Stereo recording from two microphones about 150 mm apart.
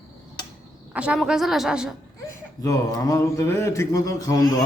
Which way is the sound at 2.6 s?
20° left (ahead or behind).